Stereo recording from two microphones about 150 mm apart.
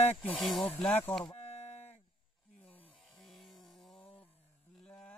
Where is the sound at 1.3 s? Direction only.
40° left (ahead or behind).